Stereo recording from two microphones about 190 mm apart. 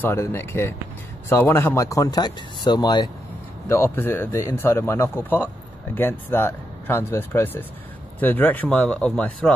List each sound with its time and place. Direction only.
0.0 s speech: 10° left (ahead or behind)